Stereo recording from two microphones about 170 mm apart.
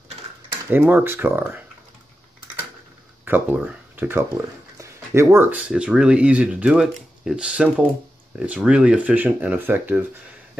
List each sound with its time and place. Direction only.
0.7 s speech: 10° right (ahead or behind)
3.3 s speech: 10° right (ahead or behind)
4.7 s a sound: 15° right (ahead or behind)
5.6 s speech: 5° right (ahead or behind)